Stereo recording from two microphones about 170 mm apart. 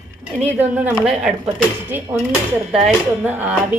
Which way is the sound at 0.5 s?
10° right (ahead or behind).